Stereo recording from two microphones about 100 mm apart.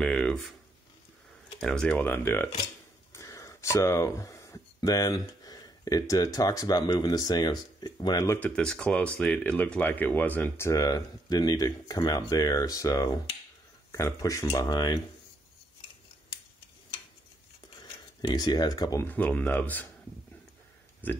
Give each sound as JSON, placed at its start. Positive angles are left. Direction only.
{"t": 0.0, "sound": "speech", "side_deg": 10}
{"t": 1.6, "sound": "speech", "side_deg": 10}
{"t": 3.1, "sound": "a sound", "side_deg": 35}
{"t": 4.7, "sound": "speech", "side_deg": 35}
{"t": 8.4, "sound": "speech", "side_deg": 10}
{"t": 10.7, "sound": "speech", "side_deg": 35}
{"t": 18.2, "sound": "speech", "side_deg": 45}
{"t": 19.0, "sound": "speech", "side_deg": 15}
{"t": 21.0, "sound": "speech", "side_deg": 20}